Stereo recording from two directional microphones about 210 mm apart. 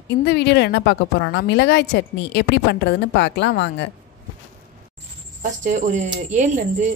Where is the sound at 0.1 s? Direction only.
50° left (ahead or behind).